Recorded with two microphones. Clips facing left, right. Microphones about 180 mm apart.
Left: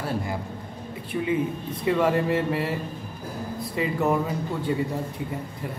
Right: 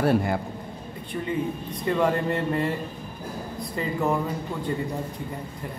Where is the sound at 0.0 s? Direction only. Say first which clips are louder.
Right 7 dB; 60° right (ahead or behind).